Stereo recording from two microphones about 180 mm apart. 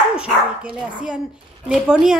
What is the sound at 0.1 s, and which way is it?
Dog, 5° right (ahead or behind).